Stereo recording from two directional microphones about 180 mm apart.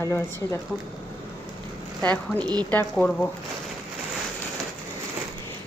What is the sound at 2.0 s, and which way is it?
Speech, 5° left (ahead or behind).